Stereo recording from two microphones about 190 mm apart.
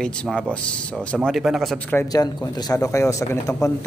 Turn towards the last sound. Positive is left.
turn(degrees=15)  # may be behind; listen again after turning